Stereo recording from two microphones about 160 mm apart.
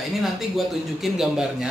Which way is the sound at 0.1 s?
Centre (ahead or behind).